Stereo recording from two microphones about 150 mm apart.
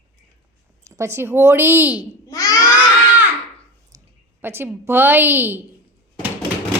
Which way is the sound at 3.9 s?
25° right (ahead or behind).